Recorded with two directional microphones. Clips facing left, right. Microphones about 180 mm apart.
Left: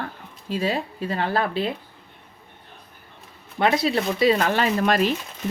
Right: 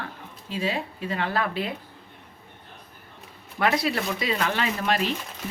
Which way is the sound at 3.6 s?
25° left (ahead or behind).